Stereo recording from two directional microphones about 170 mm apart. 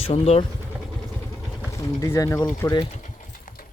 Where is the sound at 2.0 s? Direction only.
15° left (ahead or behind).